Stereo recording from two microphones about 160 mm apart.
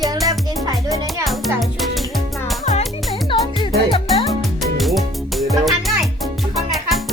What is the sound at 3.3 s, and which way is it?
Music, 30° left (ahead or behind).